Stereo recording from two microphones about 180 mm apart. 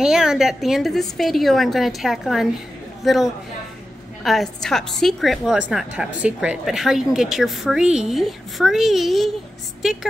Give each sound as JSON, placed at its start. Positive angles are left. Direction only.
{"t": 0.0, "sound": "a woman's voice", "side_deg": -5}
{"t": 4.2, "sound": "a woman's voice", "side_deg": 0}